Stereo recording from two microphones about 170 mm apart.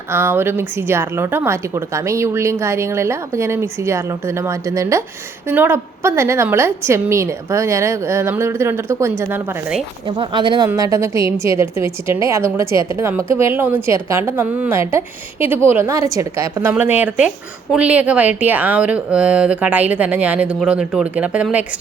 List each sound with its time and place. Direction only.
0.1 s a woman's voice: 15° right (ahead or behind)
10.1 s a woman's voice: 30° right (ahead or behind); by 21.6 s 10° right (ahead or behind)